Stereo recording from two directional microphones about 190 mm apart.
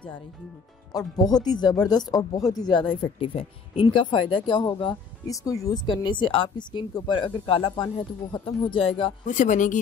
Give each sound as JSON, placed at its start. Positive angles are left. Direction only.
{"t": 0.9, "sound": "speech", "side_deg": 20}
{"t": 9.2, "sound": "speech", "side_deg": 40}